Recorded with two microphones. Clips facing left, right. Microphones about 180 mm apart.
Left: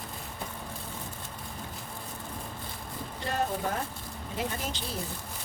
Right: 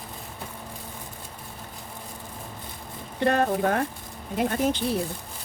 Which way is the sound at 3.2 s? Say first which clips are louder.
Right 9 dB; 65° right (ahead or behind).